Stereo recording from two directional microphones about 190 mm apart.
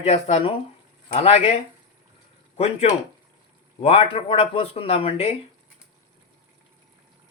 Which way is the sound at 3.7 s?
30° left (ahead or behind).